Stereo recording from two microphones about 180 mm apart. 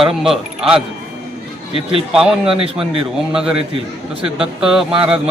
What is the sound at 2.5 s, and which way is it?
Speech, 30° right (ahead or behind).